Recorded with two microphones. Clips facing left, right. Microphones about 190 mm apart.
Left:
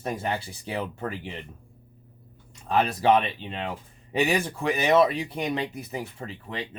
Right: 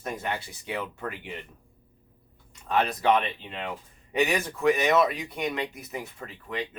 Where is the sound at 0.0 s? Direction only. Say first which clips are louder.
Left 3 dB; 30° left (ahead or behind).